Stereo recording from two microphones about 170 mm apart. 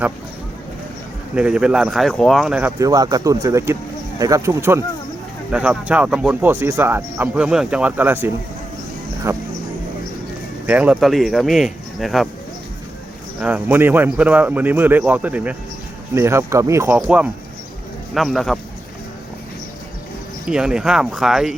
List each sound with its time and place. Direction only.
1.4 s speech: 5° right (ahead or behind)
9.3 s music: 15° right (ahead or behind)
10.7 s speech: 10° right (ahead or behind)
13.4 s speech: 10° right (ahead or behind)
20.5 s speech: 5° right (ahead or behind)